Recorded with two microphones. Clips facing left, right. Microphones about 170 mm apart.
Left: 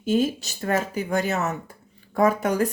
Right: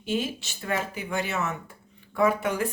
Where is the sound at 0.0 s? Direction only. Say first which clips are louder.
Left 7 dB; 40° left (ahead or behind).